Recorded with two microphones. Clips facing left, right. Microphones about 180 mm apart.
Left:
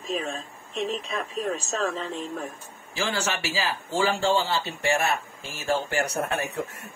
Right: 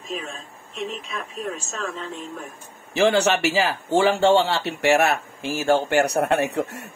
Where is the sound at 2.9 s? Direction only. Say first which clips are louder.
Right 10 dB; 70° right (ahead or behind).